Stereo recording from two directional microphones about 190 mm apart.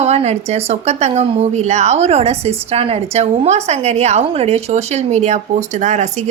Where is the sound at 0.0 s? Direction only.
35° right (ahead or behind).